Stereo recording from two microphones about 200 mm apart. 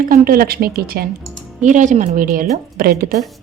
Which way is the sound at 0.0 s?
45° right (ahead or behind).